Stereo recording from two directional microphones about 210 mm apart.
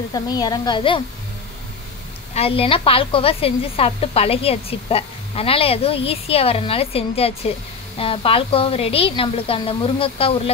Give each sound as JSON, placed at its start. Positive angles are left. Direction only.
{"t": 0.1, "sound": "a woman's voice", "side_deg": 20}
{"t": 2.3, "sound": "a woman's voice", "side_deg": 25}